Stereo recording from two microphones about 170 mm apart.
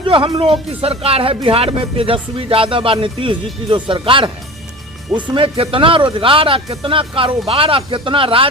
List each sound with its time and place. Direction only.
0.0 s speech: 30° right (ahead or behind)